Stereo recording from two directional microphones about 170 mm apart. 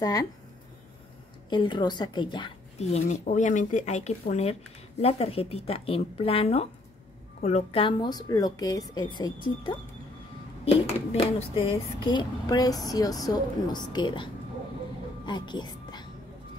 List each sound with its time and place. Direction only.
0.0 s speech: 20° left (ahead or behind)
1.5 s speech: 25° left (ahead or behind)
3.1 s speech: 45° left (ahead or behind); by 14.3 s 25° left (ahead or behind)
15.2 s music: 25° left (ahead or behind)